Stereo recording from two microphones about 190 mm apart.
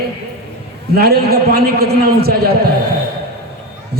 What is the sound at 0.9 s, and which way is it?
A man's voice, 55° right (ahead or behind).